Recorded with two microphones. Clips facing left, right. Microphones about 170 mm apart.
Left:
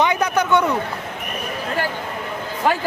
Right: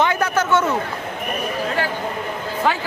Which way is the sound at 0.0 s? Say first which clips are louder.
Even; 15° left (ahead or behind).